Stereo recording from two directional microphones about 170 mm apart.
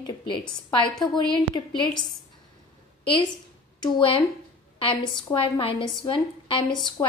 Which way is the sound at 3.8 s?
30° left (ahead or behind).